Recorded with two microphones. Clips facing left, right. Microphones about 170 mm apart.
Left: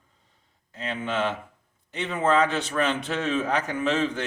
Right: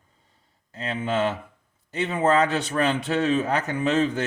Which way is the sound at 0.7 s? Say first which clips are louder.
Right 3 dB; 40° right (ahead or behind).